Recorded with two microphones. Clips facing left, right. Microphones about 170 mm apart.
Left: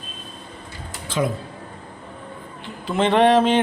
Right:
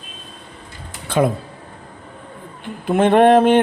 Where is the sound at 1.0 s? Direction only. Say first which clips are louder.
Right 6 dB; 60° right (ahead or behind).